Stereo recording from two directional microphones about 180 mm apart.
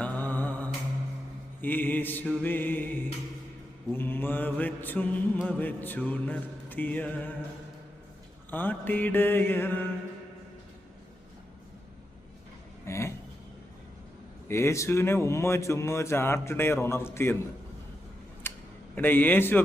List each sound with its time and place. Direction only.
0.0 s mantra: 10° left (ahead or behind)
8.4 s mantra: 10° left (ahead or behind)
12.8 s a sound: 15° left (ahead or behind)
14.4 s mantra: 15° left (ahead or behind)
18.5 s a sound: 10° left (ahead or behind)
18.9 s mantra: 10° left (ahead or behind)